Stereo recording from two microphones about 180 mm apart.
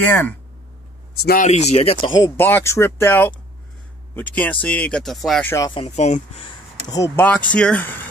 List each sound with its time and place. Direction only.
0.0 s speech: 10° left (ahead or behind)
1.1 s a man's voice: 55° left (ahead or behind)
1.5 s speech: 35° left (ahead or behind)
2.1 s speech: 15° left (ahead or behind)
5.8 s speech: 40° left (ahead or behind)
6.9 s speech: 20° left (ahead or behind)
7.2 s speech: 5° left (ahead or behind)